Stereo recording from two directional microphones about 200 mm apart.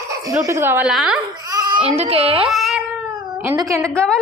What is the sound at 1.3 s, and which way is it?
Babbling, 20° right (ahead or behind).